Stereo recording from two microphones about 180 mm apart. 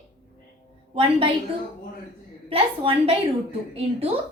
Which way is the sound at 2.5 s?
30° right (ahead or behind).